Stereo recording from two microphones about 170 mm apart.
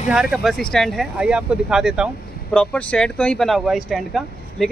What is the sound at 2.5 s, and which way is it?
Speech, 5° left (ahead or behind).